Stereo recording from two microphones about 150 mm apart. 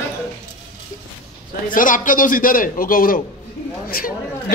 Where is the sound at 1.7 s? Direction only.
60° left (ahead or behind).